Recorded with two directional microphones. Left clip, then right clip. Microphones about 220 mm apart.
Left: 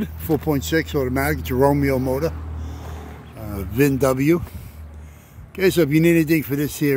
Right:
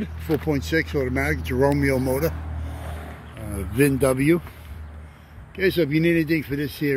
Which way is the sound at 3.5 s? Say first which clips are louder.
Left 2 dB; 5° left (ahead or behind).